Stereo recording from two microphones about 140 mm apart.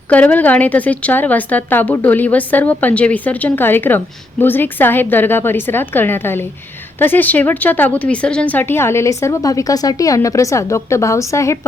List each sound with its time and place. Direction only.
0.1 s a woman's voice: 10° left (ahead or behind)